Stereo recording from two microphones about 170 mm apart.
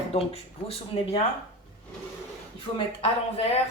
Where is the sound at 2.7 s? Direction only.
40° left (ahead or behind).